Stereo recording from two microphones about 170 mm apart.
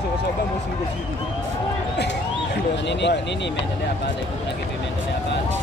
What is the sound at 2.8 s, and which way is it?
Speech, 90° left.